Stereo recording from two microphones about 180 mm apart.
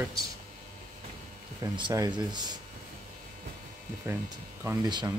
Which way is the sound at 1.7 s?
25° right (ahead or behind).